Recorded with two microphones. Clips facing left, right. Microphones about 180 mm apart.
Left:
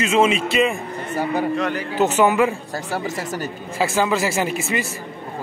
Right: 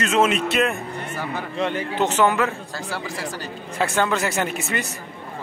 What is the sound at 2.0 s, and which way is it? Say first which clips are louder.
Speech: left 3 dB; 10° left (ahead or behind).